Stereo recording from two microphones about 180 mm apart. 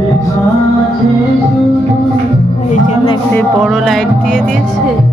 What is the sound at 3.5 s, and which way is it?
Speech, centre (ahead or behind).